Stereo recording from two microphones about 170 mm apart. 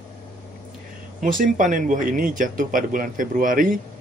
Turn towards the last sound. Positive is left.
turn(degrees=-55)  # may be behind; listen again after turning